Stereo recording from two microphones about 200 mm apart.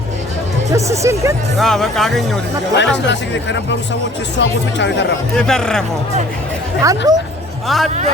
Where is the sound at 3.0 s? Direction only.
60° left (ahead or behind).